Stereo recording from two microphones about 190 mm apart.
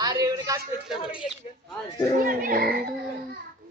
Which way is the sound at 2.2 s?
45° right (ahead or behind).